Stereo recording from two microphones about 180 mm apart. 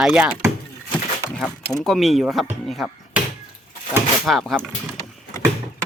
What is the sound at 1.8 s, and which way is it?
Speech, centre (ahead or behind).